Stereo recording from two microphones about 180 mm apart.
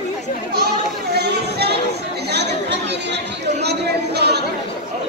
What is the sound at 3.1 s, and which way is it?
Chatter, 65° right (ahead or behind).